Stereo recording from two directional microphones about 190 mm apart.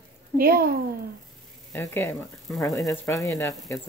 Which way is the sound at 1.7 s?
10° left (ahead or behind).